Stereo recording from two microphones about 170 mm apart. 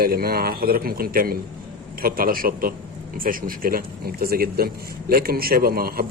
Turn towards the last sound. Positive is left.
turn(degrees=-60)  # may be behind; listen again after turning